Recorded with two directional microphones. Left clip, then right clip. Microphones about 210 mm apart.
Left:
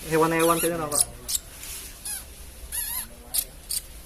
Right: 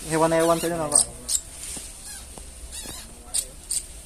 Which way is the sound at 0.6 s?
25° right (ahead or behind).